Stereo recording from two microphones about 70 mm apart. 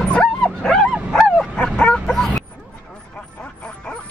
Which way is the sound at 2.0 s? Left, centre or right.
Centre.